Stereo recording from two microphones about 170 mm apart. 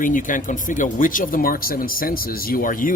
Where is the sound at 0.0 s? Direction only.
50° left (ahead or behind).